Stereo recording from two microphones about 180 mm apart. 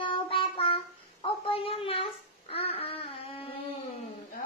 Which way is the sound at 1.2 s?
30° left (ahead or behind).